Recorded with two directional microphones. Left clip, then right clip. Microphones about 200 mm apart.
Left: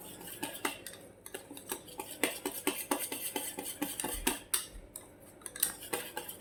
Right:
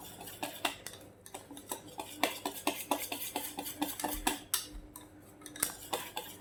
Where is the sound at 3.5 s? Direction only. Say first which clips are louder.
Right 1 dB; 10° right (ahead or behind).